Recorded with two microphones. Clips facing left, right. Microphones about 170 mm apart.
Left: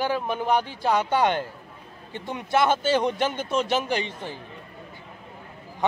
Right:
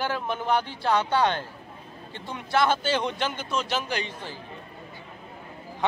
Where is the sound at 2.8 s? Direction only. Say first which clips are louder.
Left 4 dB; 45° left (ahead or behind).